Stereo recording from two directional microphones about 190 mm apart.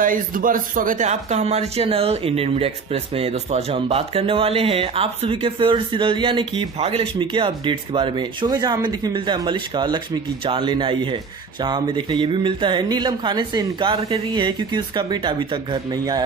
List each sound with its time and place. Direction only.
0.0 s speech: 45° right (ahead or behind); by 16.2 s 25° right (ahead or behind)